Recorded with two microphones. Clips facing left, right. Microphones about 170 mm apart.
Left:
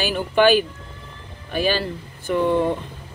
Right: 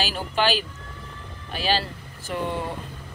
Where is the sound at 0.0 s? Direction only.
55° left (ahead or behind).